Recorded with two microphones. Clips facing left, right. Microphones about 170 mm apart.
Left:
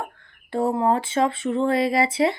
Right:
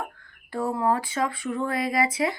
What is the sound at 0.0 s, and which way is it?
Speech, 25° left (ahead or behind).